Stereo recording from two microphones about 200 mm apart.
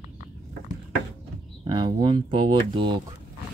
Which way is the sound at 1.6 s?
20° right (ahead or behind).